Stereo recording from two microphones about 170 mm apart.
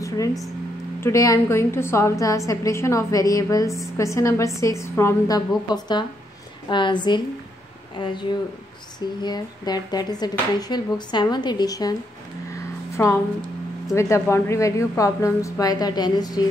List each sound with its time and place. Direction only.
1.0 s a woman's voice: 20° left (ahead or behind)
12.9 s a woman's voice: 15° left (ahead or behind)